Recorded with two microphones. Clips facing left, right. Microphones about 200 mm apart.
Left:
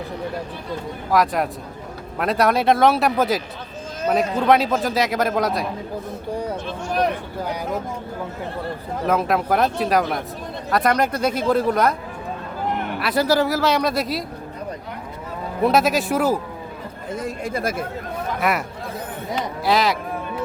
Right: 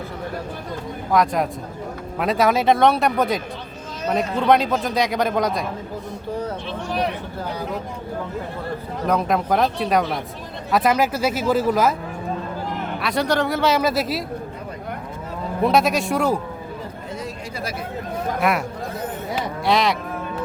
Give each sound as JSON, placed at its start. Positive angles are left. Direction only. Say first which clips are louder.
{"t": 1.1, "sound": "a man's voice", "louder": "even", "side_deg": 0}
{"t": 6.7, "sound": "speech", "louder": "left 4 dB", "side_deg": 45}
{"t": 9.0, "sound": "a man's voice", "louder": "even", "side_deg": 5}
{"t": 13.0, "sound": "a man's voice", "louder": "left 2 dB", "side_deg": 5}
{"t": 15.6, "sound": "a man's voice", "louder": "even", "side_deg": 0}
{"t": 17.1, "sound": "speech", "louder": "left 8 dB", "side_deg": 50}
{"t": 18.3, "sound": "speech", "louder": "right 1 dB", "side_deg": 0}
{"t": 19.4, "sound": "a sound", "louder": "even", "side_deg": 0}